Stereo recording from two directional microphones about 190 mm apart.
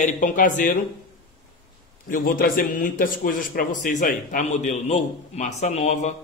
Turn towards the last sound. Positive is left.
turn(degrees=40)  # may be behind; listen again after turning